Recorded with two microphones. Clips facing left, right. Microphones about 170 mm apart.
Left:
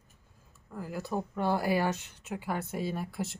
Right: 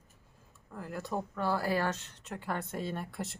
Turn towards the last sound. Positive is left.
turn(degrees=0)  # may be behind; listen again after turning